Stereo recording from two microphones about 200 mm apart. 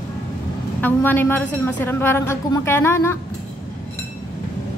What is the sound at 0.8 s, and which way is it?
A woman's voice, 10° left (ahead or behind).